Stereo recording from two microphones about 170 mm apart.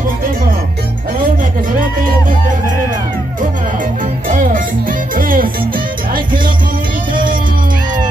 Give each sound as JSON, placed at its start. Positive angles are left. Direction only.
{"t": 4.3, "sound": "music", "side_deg": -55}